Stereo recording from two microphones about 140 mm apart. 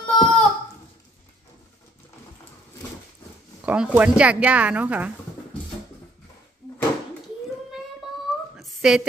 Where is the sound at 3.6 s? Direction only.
10° right (ahead or behind).